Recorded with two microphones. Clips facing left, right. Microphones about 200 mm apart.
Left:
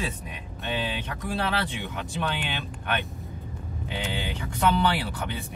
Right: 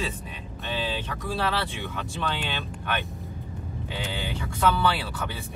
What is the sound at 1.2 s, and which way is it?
Speech, 15° left (ahead or behind).